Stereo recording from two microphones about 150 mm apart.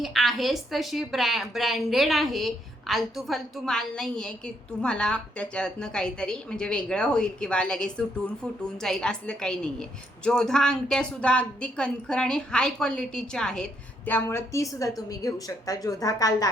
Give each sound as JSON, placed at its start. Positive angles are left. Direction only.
{"t": 0.0, "sound": "a woman's voice", "side_deg": 0}